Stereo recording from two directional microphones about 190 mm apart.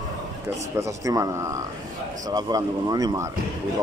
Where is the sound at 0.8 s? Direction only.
15° right (ahead or behind).